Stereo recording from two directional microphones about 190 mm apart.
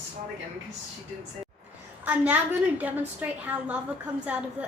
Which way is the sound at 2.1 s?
10° right (ahead or behind).